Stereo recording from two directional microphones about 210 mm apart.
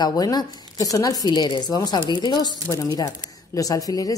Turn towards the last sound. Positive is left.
turn(degrees=15)  # may be behind; listen again after turning